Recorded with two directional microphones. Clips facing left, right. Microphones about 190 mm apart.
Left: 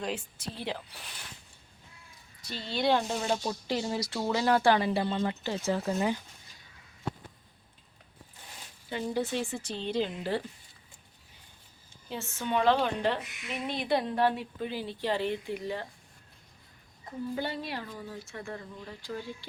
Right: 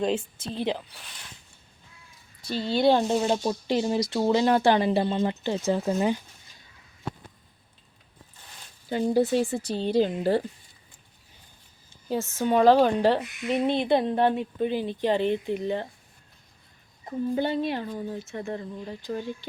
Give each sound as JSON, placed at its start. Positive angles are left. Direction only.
{"t": 0.0, "sound": "speech", "side_deg": -25}
{"t": 2.5, "sound": "a woman's voice", "side_deg": -35}
{"t": 3.2, "sound": "speech", "side_deg": -20}
{"t": 8.9, "sound": "a woman's voice", "side_deg": -40}
{"t": 12.0, "sound": "speech", "side_deg": -40}
{"t": 17.1, "sound": "speech", "side_deg": -25}